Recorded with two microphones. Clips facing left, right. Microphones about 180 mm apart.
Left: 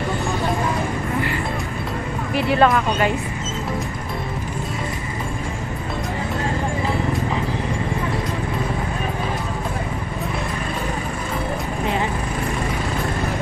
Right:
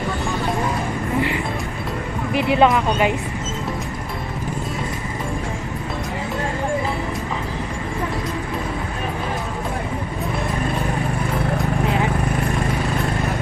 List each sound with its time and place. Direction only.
2.3 s speech: 15° right (ahead or behind)